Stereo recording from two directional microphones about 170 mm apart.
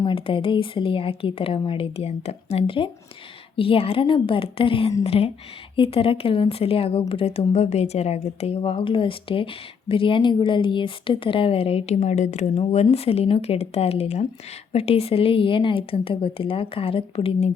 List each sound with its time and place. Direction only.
0.0 s speech: 30° left (ahead or behind)